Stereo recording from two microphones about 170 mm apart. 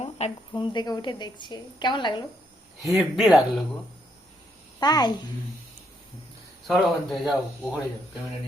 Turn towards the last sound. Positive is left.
turn(degrees=0)  # may be behind; listen again after turning